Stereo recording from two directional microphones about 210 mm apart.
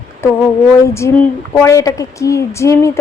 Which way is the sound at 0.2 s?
10° left (ahead or behind).